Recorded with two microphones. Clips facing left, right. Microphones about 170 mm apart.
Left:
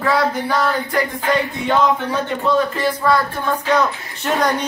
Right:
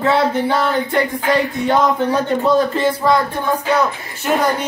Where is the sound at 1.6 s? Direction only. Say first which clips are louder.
Right 1 dB; 40° right (ahead or behind).